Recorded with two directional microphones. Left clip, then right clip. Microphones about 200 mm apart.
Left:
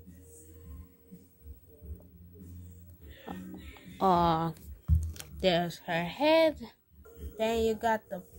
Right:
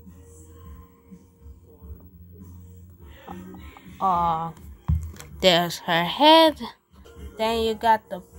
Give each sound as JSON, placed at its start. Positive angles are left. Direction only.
{"t": 3.3, "sound": "music", "side_deg": 65}
{"t": 5.4, "sound": "speech", "side_deg": 10}